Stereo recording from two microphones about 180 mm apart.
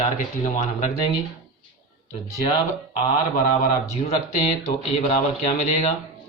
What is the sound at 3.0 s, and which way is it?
Speech, 35° left (ahead or behind).